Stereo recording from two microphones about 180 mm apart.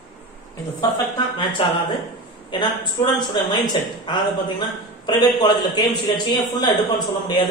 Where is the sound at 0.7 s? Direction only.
25° left (ahead or behind).